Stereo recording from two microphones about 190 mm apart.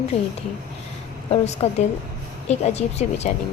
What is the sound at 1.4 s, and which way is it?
A woman's voice, 35° left (ahead or behind).